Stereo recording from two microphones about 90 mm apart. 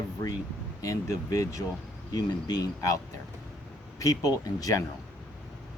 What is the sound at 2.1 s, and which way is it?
Speech, 50° left (ahead or behind).